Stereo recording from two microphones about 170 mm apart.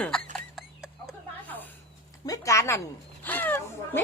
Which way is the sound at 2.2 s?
20° left (ahead or behind).